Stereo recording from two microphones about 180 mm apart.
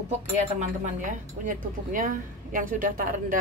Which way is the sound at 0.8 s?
45° right (ahead or behind).